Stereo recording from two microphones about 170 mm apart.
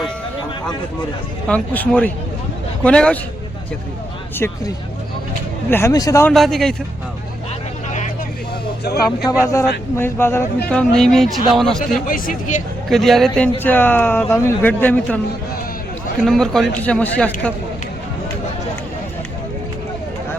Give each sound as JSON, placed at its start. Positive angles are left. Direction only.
{"t": 1.5, "sound": "speech", "side_deg": 10}
{"t": 4.4, "sound": "speech", "side_deg": 15}
{"t": 5.7, "sound": "speech", "side_deg": 20}
{"t": 6.3, "sound": "speech", "side_deg": 0}
{"t": 9.2, "sound": "speech", "side_deg": 20}
{"t": 12.0, "sound": "speech", "side_deg": 55}
{"t": 12.9, "sound": "speech", "side_deg": 0}
{"t": 16.2, "sound": "speech", "side_deg": 0}